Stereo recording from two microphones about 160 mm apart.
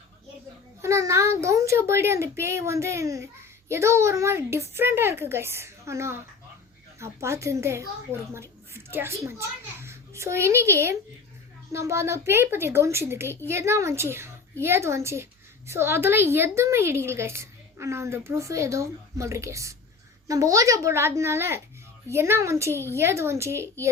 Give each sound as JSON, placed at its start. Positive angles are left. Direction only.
{"t": 0.8, "sound": "a woman's voice", "side_deg": -20}